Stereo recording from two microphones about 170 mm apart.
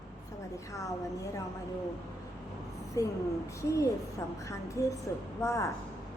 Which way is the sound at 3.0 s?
20° left (ahead or behind).